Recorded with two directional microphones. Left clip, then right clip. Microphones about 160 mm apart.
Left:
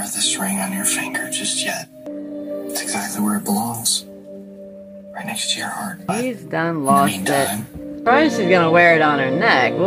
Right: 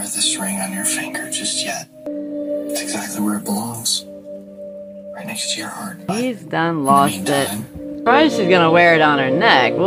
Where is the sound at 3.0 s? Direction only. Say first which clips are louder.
Even; centre (ahead or behind).